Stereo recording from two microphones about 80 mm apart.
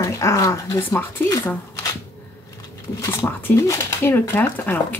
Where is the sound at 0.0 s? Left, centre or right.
Left.